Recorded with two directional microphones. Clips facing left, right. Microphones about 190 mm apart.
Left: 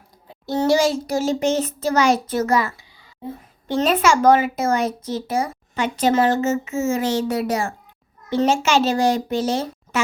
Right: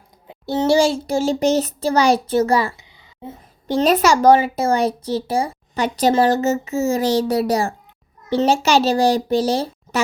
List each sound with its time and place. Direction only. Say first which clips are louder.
0.4 s speech: right 2 dB; 25° right (ahead or behind)